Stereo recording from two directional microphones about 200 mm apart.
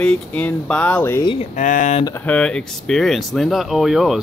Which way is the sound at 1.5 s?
40° left (ahead or behind).